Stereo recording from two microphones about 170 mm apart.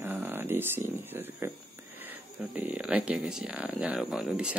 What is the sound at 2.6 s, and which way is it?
Speech, 10° right (ahead or behind).